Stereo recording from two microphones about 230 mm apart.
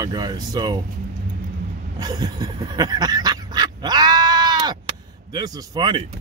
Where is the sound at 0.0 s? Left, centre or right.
Centre.